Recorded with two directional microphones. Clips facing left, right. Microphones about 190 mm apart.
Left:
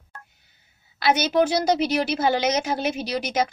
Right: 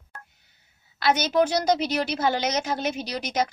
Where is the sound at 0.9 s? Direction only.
10° left (ahead or behind).